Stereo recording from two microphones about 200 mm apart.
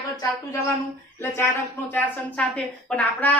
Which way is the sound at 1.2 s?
10° left (ahead or behind).